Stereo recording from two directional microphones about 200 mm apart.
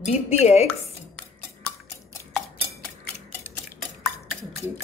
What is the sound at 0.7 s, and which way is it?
Dishes, 5° left (ahead or behind).